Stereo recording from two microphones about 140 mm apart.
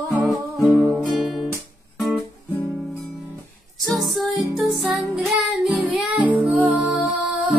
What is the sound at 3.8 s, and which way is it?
Music, centre (ahead or behind).